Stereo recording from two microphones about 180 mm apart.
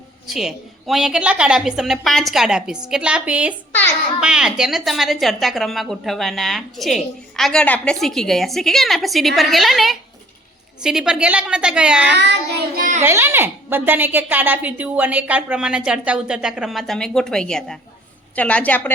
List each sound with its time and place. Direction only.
0.3 s a woman's voice: centre (ahead or behind)
12.7 s a child's voice: 50° right (ahead or behind)
13.0 s a woman's voice: 15° right (ahead or behind); by 18.9 s 10° left (ahead or behind)